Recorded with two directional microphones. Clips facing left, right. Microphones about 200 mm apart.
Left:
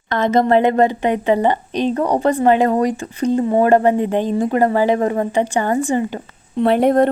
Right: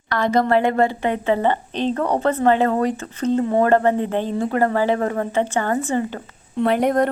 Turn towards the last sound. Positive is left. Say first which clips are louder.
# left 4 dB
turn(degrees=30)  # may be behind; listen again after turning